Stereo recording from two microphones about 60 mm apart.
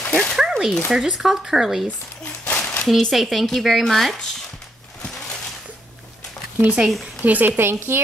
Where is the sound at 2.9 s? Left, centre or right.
Centre.